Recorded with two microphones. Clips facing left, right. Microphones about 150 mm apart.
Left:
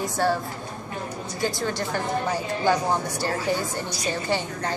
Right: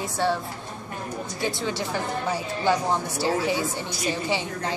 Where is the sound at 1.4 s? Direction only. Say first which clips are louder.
Left 2 dB; centre (ahead or behind).